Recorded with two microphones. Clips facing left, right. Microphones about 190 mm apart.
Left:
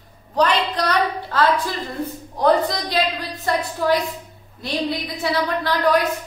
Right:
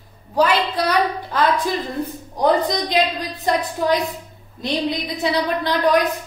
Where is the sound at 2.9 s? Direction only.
15° right (ahead or behind).